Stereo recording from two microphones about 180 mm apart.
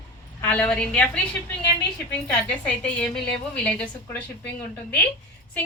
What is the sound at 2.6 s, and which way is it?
A woman's voice, 5° left (ahead or behind).